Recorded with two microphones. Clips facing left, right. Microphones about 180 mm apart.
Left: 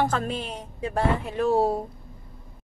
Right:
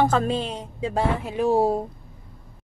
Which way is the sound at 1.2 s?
15° right (ahead or behind).